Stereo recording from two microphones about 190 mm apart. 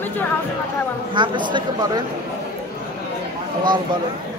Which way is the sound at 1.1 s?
25° right (ahead or behind).